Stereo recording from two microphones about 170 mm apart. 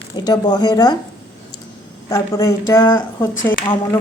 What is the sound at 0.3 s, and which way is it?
Speech, 25° left (ahead or behind).